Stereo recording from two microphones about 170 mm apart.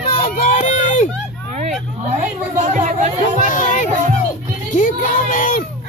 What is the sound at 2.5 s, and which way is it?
Speech, 45° right (ahead or behind).